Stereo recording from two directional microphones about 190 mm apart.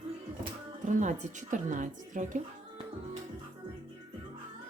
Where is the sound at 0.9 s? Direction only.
40° right (ahead or behind).